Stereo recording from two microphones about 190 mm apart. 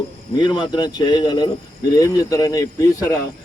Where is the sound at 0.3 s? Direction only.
25° left (ahead or behind).